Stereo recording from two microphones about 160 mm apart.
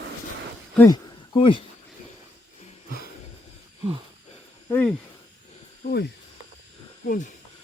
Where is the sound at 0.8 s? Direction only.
30° left (ahead or behind).